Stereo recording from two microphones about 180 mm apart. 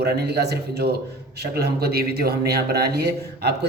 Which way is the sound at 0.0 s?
65° right (ahead or behind).